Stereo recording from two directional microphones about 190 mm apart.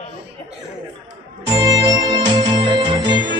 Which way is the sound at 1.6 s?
20° right (ahead or behind).